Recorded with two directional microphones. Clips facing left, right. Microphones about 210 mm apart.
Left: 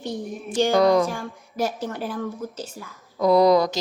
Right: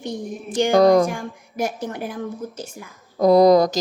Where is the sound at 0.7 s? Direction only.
45° right (ahead or behind).